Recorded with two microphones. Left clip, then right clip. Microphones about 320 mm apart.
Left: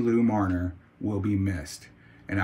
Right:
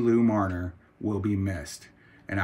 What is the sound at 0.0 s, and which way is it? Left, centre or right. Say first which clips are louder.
Speech: right 1 dB; centre.